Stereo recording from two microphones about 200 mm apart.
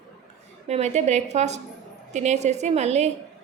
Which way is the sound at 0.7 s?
35° right (ahead or behind).